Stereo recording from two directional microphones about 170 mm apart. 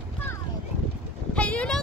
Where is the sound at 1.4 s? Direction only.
5° left (ahead or behind).